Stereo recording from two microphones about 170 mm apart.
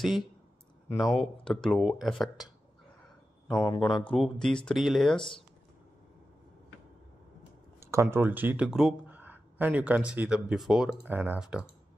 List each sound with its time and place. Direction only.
0.9 s speech: centre (ahead or behind)
3.4 s a man's voice: 20° left (ahead or behind)
4.0 s speech: 5° left (ahead or behind)
7.8 s speech: 15° right (ahead or behind)